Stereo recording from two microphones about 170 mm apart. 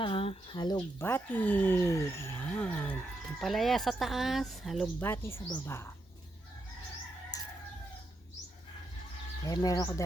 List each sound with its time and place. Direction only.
0.0 s speech: 30° left (ahead or behind)
0.9 s speech: 15° left (ahead or behind)
4.9 s speech: 15° left (ahead or behind)
7.3 s chicken: 20° left (ahead or behind)
9.5 s speech: 20° left (ahead or behind)